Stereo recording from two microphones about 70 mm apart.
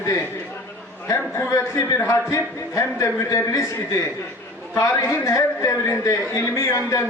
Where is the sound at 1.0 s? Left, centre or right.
Left.